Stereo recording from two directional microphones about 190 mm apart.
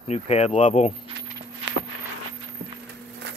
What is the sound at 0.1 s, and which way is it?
Speech, 35° left (ahead or behind).